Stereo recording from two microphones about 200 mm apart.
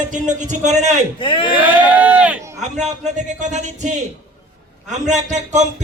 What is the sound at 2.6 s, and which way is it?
Speech, 35° right (ahead or behind).